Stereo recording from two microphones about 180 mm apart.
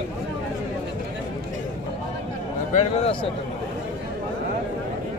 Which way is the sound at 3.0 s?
30° left (ahead or behind).